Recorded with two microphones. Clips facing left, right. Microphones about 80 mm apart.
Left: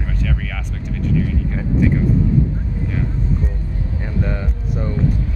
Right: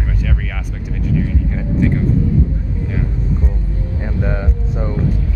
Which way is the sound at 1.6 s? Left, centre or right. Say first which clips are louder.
Even; centre.